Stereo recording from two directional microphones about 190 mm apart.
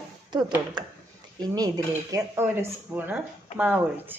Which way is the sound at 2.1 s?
15° right (ahead or behind).